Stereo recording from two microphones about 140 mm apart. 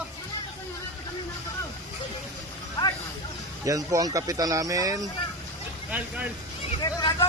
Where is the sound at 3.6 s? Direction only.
25° right (ahead or behind).